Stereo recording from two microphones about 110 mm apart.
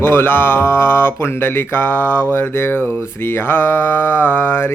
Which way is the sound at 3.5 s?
20° left (ahead or behind).